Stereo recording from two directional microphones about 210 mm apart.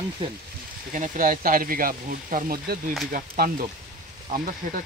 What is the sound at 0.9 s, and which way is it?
Speech, 40° right (ahead or behind).